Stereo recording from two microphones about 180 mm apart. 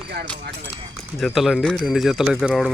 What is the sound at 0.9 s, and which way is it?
Speech, centre (ahead or behind).